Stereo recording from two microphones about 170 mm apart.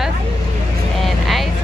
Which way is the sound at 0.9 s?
Centre (ahead or behind).